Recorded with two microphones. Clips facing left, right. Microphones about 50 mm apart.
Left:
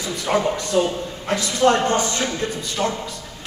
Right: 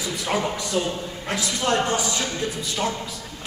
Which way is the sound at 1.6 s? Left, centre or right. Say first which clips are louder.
Left 6 dB; left.